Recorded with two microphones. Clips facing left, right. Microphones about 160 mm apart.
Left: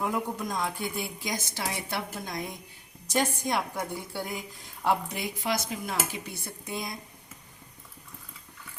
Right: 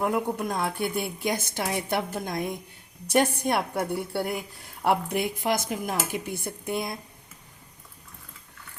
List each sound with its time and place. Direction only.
0.0 s a woman's voice: 60° right (ahead or behind)